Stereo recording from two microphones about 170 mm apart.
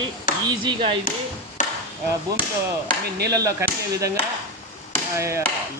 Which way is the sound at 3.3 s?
20° right (ahead or behind).